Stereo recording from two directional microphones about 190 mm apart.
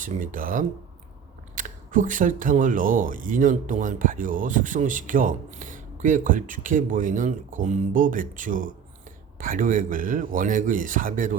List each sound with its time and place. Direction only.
0.0 s speech: 45° right (ahead or behind)